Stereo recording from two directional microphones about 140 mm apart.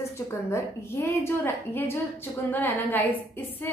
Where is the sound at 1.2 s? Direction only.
15° left (ahead or behind).